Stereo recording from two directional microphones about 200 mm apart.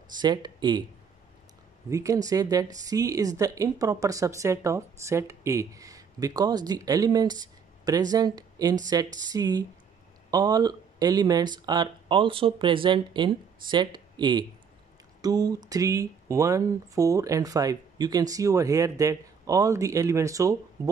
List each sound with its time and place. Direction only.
0.2 s speech: 20° right (ahead or behind)
1.9 s speech: 15° right (ahead or behind)